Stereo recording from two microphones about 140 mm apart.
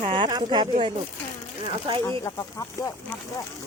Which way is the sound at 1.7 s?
35° right (ahead or behind).